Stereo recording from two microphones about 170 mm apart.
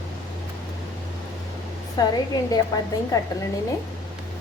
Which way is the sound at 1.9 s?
20° left (ahead or behind).